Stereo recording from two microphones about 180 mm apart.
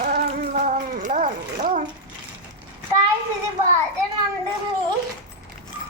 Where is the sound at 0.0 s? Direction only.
55° right (ahead or behind).